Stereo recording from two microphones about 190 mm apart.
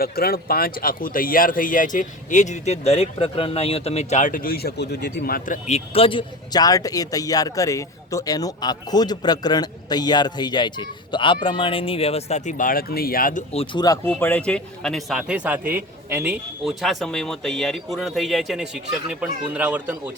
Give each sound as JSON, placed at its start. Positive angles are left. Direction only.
{"t": 0.0, "sound": "speech", "side_deg": 50}
{"t": 5.6, "sound": "a man's voice", "side_deg": 35}
{"t": 13.5, "sound": "speech", "side_deg": 30}
{"t": 13.8, "sound": "a man's voice", "side_deg": 20}